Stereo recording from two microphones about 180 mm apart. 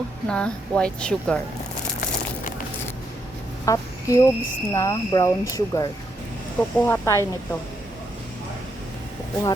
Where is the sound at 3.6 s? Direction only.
20° left (ahead or behind).